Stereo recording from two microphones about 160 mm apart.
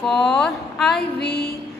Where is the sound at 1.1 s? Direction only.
90° left.